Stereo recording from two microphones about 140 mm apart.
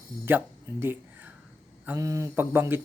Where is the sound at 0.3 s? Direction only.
15° right (ahead or behind).